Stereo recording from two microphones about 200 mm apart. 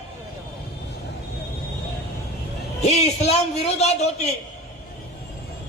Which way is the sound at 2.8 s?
35° left (ahead or behind).